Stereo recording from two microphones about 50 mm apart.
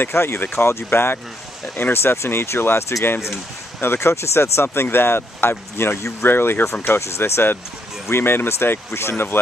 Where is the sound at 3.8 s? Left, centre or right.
Left.